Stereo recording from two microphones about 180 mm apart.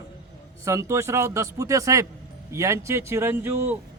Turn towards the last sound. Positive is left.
turn(degrees=-10)  # may be behind; listen again after turning